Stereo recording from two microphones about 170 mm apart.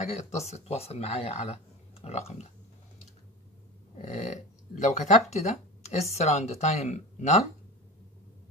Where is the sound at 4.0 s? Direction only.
40° left (ahead or behind).